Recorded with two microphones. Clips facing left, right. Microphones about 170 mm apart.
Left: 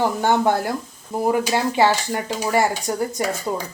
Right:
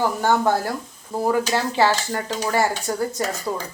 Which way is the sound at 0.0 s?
20° left (ahead or behind).